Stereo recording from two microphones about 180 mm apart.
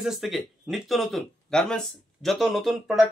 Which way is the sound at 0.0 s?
Centre (ahead or behind).